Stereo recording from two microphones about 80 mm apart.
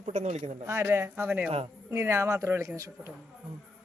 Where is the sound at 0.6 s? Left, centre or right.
Right.